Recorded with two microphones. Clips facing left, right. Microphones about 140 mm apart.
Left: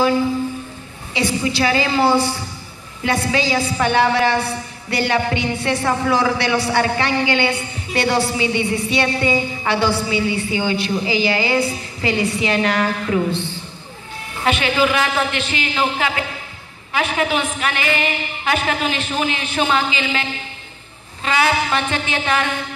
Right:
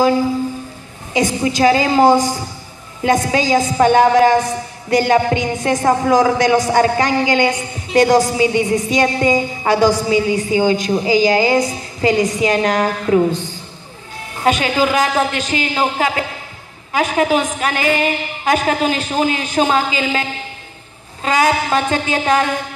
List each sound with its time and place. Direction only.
1.1 s a woman's voice: 45° right (ahead or behind)